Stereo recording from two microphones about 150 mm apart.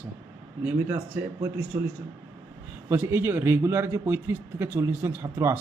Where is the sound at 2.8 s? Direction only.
15° right (ahead or behind).